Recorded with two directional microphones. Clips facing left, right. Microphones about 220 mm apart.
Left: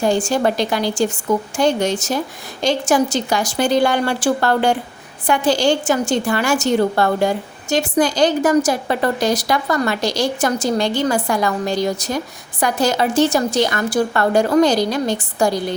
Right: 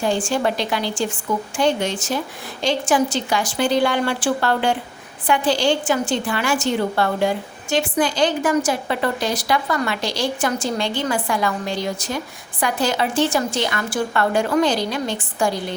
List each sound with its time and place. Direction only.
0.0 s a woman's voice: 40° left (ahead or behind)